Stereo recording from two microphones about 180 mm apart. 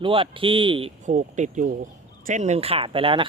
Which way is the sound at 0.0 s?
30° right (ahead or behind).